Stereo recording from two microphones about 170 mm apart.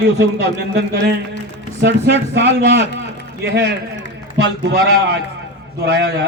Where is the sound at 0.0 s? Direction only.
75° right (ahead or behind).